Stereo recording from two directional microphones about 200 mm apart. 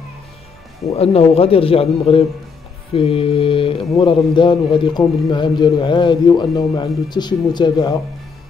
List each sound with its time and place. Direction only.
0.9 s a man's voice: 30° left (ahead or behind)